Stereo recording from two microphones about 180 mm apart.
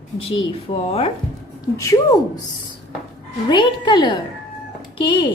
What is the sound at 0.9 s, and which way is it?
Speech, 35° left (ahead or behind).